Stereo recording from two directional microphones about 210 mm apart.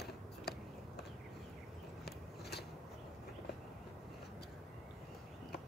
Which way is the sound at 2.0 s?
50° left (ahead or behind).